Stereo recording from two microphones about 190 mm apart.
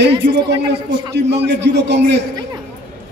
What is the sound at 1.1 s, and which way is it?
A man's voice, 65° right (ahead or behind).